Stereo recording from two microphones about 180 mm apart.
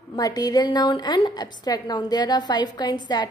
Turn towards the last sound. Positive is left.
turn(degrees=25)  # may be behind; listen again after turning